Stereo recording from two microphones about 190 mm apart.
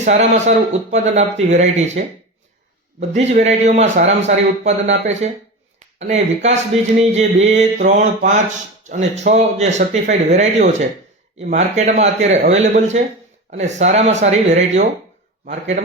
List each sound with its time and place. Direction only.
0.0 s speech: 40° right (ahead or behind)
3.1 s speech: 35° right (ahead or behind)